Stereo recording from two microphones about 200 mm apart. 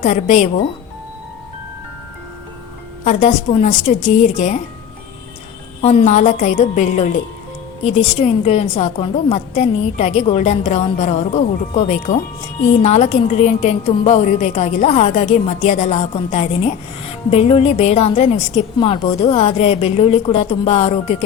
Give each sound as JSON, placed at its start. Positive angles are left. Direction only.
{"t": 0.0, "sound": "a woman's voice", "side_deg": 35}
{"t": 3.0, "sound": "a woman's voice", "side_deg": 35}
{"t": 5.8, "sound": "a woman's voice", "side_deg": 35}